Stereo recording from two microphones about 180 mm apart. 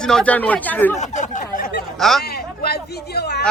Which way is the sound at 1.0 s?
40° left (ahead or behind).